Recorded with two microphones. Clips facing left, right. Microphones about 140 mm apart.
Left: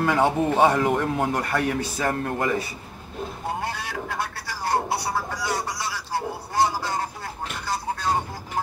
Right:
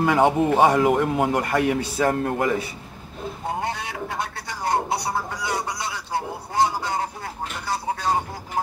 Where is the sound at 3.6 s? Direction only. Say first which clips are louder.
Right 2 dB; 20° right (ahead or behind).